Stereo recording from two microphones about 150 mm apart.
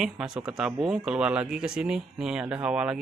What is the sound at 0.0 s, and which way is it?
Speech, 5° right (ahead or behind).